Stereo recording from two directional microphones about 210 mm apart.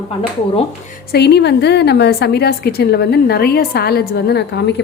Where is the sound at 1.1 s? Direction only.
50° left (ahead or behind).